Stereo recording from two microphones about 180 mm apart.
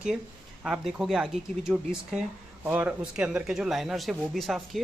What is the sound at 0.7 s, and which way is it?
Speech, centre (ahead or behind).